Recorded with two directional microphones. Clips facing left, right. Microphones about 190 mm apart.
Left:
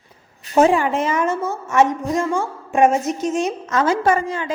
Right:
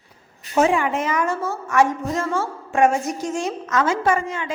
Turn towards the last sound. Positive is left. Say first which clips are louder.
# left 3 dB
turn(degrees=35)  # may be behind; listen again after turning